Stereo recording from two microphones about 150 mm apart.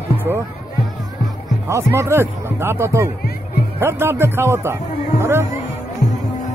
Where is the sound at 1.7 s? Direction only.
15° right (ahead or behind).